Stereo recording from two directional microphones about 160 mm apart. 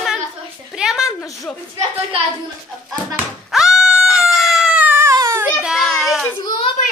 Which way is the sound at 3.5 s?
Centre (ahead or behind).